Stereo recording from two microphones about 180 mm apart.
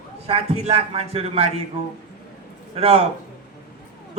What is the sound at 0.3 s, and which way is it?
A man's voice, 35° right (ahead or behind).